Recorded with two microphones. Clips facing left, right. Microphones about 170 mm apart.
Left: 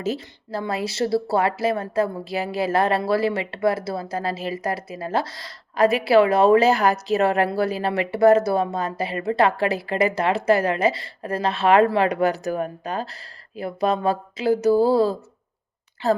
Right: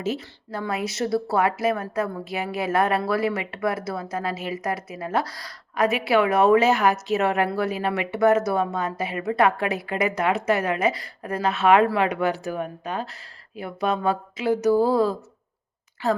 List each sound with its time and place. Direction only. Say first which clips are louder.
0.0 s speech: left 1 dB; 35° left (ahead or behind)